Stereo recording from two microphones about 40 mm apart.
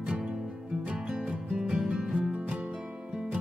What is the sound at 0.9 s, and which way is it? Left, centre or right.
Music, right.